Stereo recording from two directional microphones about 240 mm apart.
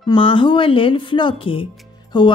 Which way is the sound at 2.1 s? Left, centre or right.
Centre.